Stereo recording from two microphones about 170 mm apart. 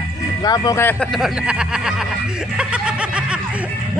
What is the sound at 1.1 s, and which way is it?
Speech, 5° right (ahead or behind).